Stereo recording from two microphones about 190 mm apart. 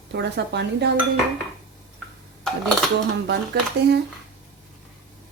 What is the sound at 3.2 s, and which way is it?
Speech, 60° right (ahead or behind).